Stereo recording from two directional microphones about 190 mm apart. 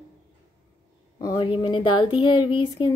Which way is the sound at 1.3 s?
30° left (ahead or behind).